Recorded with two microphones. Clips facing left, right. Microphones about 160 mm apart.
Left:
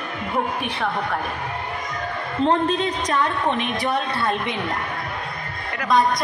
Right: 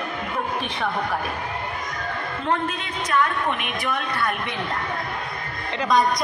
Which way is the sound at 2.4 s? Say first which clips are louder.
Left 7 dB; 35° left (ahead or behind).